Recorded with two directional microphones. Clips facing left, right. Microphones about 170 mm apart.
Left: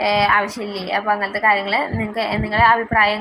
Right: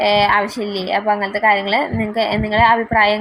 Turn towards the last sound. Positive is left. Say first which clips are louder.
# right 2 dB
turn(degrees=-30)  # may be behind; listen again after turning